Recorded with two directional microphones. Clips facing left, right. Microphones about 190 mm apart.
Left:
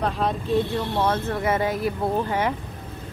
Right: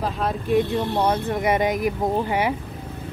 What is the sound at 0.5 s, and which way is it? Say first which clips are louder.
Speech: right 5 dB; 15° right (ahead or behind).